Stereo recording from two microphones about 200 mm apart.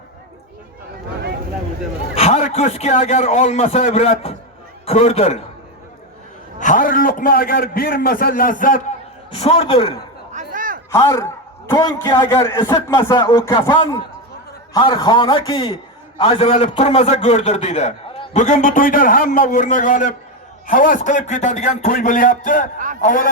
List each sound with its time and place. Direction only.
2.1 s a man's voice: 35° left (ahead or behind)
6.6 s a man's voice: 40° left (ahead or behind)
9.3 s a man's voice: 25° left (ahead or behind)
10.3 s a sound: 40° right (ahead or behind)
10.9 s a man's voice: 15° left (ahead or behind); by 23.3 s 40° left (ahead or behind)